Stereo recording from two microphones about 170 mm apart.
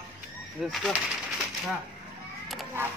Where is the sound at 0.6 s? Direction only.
5° right (ahead or behind).